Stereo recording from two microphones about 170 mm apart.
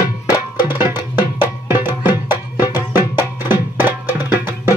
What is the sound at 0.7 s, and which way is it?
Music, 15° right (ahead or behind).